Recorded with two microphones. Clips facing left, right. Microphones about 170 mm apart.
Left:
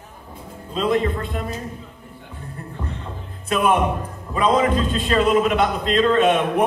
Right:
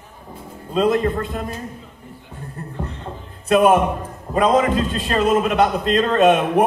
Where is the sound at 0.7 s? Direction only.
45° right (ahead or behind).